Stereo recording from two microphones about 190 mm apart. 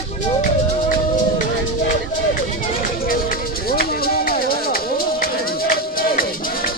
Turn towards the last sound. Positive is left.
turn(degrees=50)  # may be behind; listen again after turning